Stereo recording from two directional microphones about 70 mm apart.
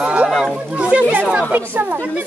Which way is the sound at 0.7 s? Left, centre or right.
Centre.